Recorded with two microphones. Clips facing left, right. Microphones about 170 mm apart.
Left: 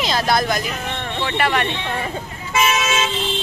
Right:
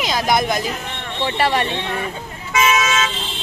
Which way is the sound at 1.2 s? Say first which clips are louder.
Right 2 dB; 35° right (ahead or behind).